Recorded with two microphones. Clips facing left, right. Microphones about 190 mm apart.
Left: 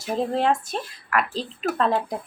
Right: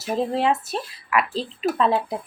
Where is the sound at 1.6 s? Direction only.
Centre (ahead or behind).